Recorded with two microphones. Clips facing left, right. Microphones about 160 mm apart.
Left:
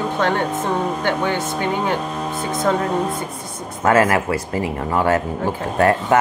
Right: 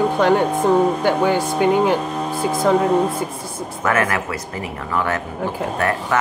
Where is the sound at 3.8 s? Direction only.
30° left (ahead or behind).